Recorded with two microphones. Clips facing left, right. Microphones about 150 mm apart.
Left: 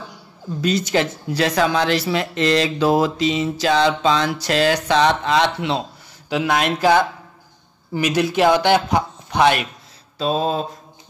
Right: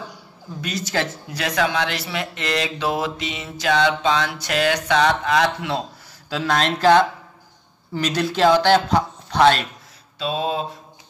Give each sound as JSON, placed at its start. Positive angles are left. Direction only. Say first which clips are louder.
{"t": 0.6, "sound": "speech", "louder": "left 6 dB", "side_deg": 30}
{"t": 10.1, "sound": "mantra", "louder": "left 4 dB", "side_deg": 40}